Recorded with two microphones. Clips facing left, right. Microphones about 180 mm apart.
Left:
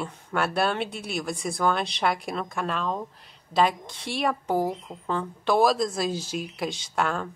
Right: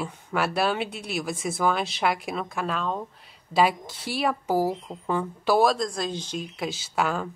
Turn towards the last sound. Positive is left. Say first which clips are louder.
# right 1 dB
turn(degrees=-5)  # may be behind; listen again after turning